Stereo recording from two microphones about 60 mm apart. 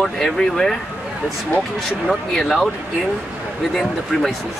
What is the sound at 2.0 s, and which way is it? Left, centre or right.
Speech, centre.